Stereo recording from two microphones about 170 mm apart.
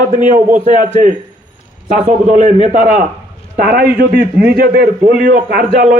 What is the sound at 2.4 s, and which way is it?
Speech, 40° right (ahead or behind).